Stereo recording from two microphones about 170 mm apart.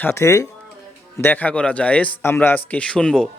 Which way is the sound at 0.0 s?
15° left (ahead or behind).